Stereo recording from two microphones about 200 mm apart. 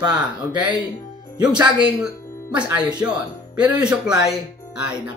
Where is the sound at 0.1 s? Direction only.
5° right (ahead or behind).